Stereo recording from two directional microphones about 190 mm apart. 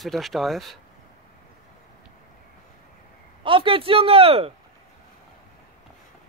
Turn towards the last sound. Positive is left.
turn(degrees=-30)  # may be behind; listen again after turning